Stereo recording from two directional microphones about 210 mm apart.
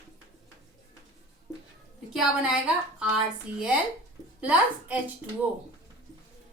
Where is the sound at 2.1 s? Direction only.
5° right (ahead or behind).